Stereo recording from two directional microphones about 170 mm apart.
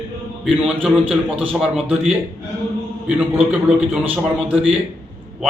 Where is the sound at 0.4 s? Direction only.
5° right (ahead or behind).